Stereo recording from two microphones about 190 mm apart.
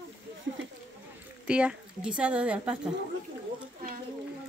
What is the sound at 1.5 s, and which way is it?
A woman's voice, 5° right (ahead or behind).